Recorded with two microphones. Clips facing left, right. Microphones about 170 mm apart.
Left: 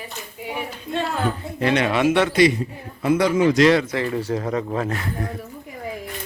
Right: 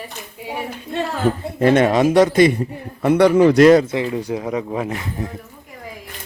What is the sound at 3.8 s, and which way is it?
Speech, 15° right (ahead or behind).